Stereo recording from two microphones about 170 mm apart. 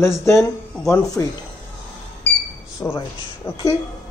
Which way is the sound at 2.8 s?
15° left (ahead or behind).